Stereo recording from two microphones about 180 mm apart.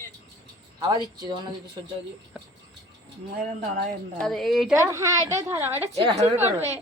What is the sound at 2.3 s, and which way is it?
Speech, 5° right (ahead or behind).